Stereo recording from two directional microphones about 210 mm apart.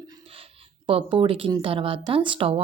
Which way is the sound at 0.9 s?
25° right (ahead or behind).